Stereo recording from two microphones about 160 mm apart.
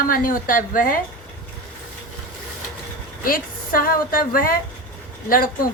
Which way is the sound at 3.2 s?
60° left (ahead or behind).